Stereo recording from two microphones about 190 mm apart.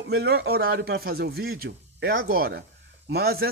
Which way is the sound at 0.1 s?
55° right (ahead or behind).